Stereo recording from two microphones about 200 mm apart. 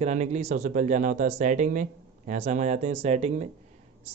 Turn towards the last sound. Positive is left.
turn(degrees=-35)  # may be behind; listen again after turning